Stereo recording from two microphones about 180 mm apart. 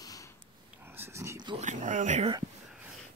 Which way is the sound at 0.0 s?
20° left (ahead or behind).